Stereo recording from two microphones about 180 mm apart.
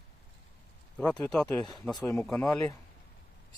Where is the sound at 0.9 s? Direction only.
5° left (ahead or behind).